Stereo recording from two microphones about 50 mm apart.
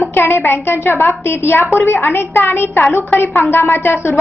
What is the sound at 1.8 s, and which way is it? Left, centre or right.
Speech, left.